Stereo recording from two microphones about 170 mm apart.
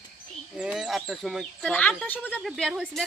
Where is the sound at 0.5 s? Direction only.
5° right (ahead or behind).